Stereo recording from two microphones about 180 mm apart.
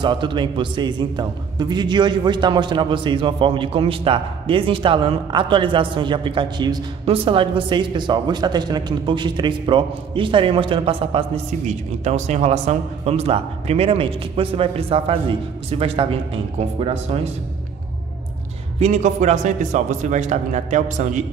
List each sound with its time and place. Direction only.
0.0 s a man's voice: 25° right (ahead or behind)
18.8 s a man's voice: 40° right (ahead or behind)